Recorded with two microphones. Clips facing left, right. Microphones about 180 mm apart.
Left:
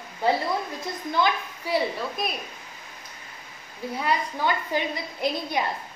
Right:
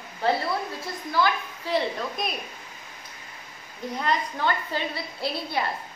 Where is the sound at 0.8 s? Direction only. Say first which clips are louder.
Even; 20° left (ahead or behind).